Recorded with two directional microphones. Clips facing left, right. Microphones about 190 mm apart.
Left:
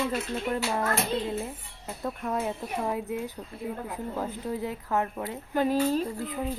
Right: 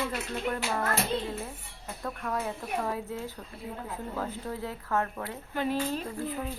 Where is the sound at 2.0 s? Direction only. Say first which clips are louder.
Left 3 dB; 20° left (ahead or behind).